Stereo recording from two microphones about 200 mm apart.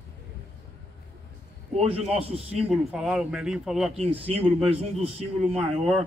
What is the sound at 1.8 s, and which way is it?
Speech, 30° right (ahead or behind).